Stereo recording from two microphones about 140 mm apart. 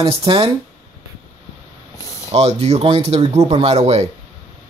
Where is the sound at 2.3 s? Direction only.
50° right (ahead or behind).